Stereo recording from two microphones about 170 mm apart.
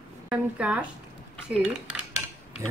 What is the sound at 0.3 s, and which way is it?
Speech, 5° right (ahead or behind).